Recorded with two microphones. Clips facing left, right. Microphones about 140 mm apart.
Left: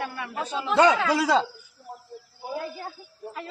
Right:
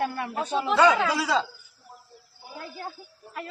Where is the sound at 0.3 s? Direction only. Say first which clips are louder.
Right 2 dB; 30° right (ahead or behind).